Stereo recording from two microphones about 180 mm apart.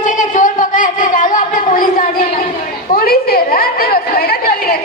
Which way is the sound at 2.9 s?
55° left (ahead or behind).